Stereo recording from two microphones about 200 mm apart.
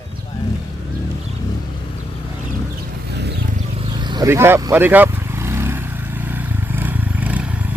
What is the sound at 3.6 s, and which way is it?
Vehicle, 30° right (ahead or behind).